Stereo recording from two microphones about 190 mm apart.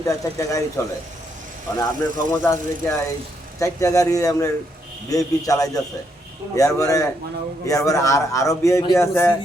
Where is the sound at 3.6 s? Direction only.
15° left (ahead or behind).